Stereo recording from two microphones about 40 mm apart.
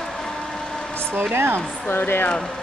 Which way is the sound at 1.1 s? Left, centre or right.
Right.